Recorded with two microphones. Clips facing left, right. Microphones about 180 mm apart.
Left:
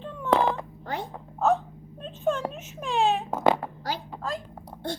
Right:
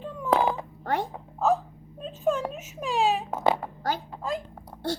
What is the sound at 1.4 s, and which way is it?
Whimper, centre (ahead or behind).